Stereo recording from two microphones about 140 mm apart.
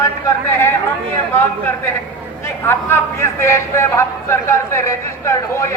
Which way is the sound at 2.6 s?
15° left (ahead or behind).